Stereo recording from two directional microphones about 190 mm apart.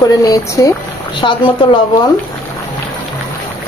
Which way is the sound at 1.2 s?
25° left (ahead or behind).